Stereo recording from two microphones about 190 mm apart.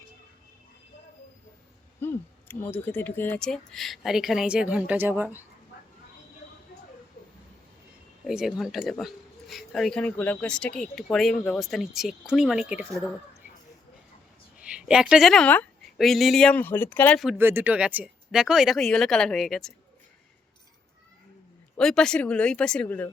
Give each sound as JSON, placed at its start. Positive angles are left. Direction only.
{"t": 2.0, "sound": "speech", "side_deg": 10}
{"t": 8.3, "sound": "speech", "side_deg": 0}
{"t": 14.7, "sound": "a woman's voice", "side_deg": -5}
{"t": 17.2, "sound": "speech", "side_deg": -5}
{"t": 21.8, "sound": "speech", "side_deg": 5}